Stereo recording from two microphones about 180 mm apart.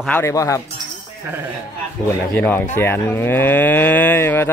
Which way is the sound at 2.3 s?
10° left (ahead or behind).